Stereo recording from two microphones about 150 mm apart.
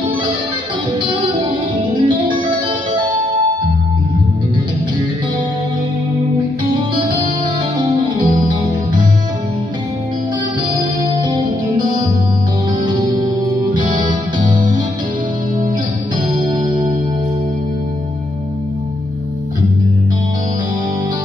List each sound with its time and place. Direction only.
2.0 s music: 30° right (ahead or behind)
11.1 s music: 30° right (ahead or behind)